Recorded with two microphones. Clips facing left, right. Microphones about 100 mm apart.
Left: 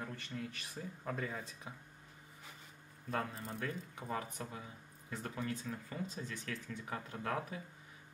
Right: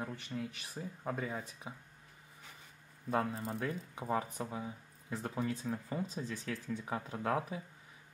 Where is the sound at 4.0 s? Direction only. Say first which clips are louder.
Right 7 dB; 25° right (ahead or behind).